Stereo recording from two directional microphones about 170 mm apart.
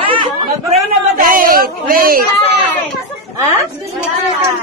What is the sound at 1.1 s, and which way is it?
A woman's voice, 55° right (ahead or behind).